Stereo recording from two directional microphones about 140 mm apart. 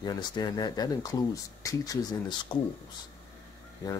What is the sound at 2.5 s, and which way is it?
Speech, 35° left (ahead or behind).